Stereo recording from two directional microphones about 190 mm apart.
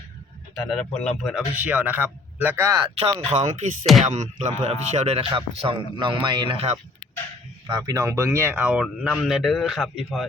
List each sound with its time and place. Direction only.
0.7 s a man's voice: 5° left (ahead or behind)
1.2 s speech: 5° right (ahead or behind)
3.0 s a man's voice: 30° right (ahead or behind); by 10.2 s centre (ahead or behind)